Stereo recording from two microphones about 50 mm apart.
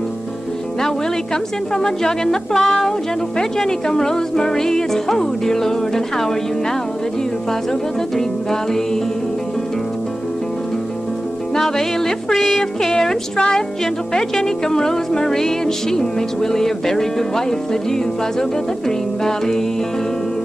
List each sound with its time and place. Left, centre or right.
0.8 s speech: centre
12.3 s speech: centre
12.9 s speech: centre
18.9 s speech: centre